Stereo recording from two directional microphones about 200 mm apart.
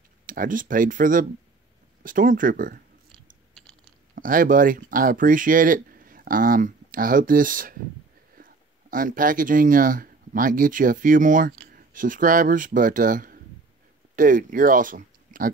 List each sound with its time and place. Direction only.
0.3 s speech: 45° right (ahead or behind)
3.6 s a sound: 5° left (ahead or behind)
4.1 s speech: 45° right (ahead or behind)